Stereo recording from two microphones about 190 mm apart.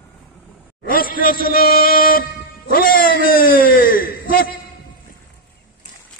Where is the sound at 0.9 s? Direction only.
50° left (ahead or behind).